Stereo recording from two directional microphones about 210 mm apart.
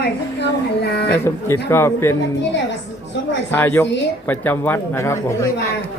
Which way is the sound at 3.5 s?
10° left (ahead or behind).